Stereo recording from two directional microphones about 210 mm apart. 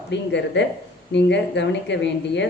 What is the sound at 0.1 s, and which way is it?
Speech, 55° left (ahead or behind).